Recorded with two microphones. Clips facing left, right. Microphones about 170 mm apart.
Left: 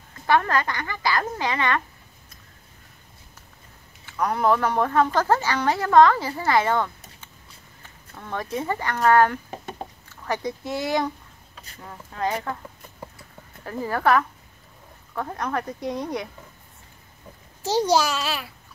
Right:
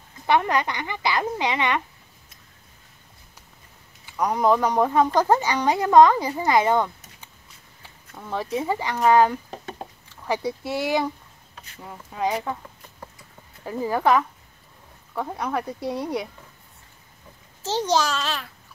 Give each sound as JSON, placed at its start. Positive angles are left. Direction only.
{"t": 0.3, "sound": "speech", "side_deg": -15}
{"t": 4.0, "sound": "speech", "side_deg": -15}
{"t": 7.8, "sound": "a sound", "side_deg": -10}
{"t": 8.5, "sound": "speech", "side_deg": -10}
{"t": 9.5, "sound": "a sound", "side_deg": 0}
{"t": 10.2, "sound": "speech", "side_deg": -10}
{"t": 13.7, "sound": "speech", "side_deg": -15}
{"t": 17.6, "sound": "a child's voice", "side_deg": 10}